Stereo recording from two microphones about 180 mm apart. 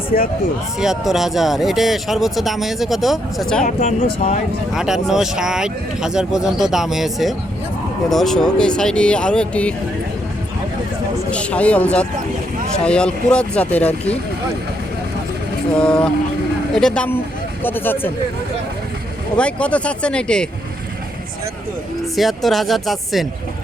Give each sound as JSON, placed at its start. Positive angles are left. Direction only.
{"t": 0.8, "sound": "speech", "side_deg": 0}
{"t": 3.6, "sound": "speech", "side_deg": 45}
{"t": 4.7, "sound": "speech", "side_deg": 0}
{"t": 11.3, "sound": "speech", "side_deg": 5}
{"t": 15.8, "sound": "speech", "side_deg": 5}
{"t": 19.4, "sound": "speech", "side_deg": 5}
{"t": 22.1, "sound": "speech", "side_deg": 0}